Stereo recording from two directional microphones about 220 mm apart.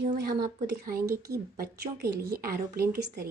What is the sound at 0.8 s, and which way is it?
A woman's voice, 40° right (ahead or behind).